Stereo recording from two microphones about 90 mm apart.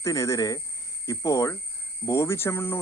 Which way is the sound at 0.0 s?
35° left (ahead or behind).